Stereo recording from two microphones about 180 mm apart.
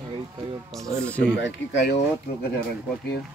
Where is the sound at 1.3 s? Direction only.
75° left (ahead or behind).